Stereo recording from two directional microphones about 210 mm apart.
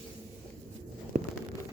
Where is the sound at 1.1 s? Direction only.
35° right (ahead or behind).